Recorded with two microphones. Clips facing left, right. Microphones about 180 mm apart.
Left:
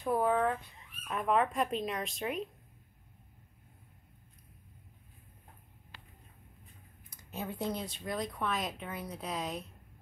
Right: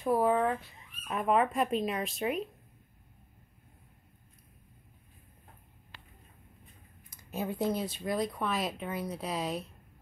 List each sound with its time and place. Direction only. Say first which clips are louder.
0.0 s speech: right 2 dB; 5° right (ahead or behind)
7.1 s speech: right 5 dB; 10° right (ahead or behind)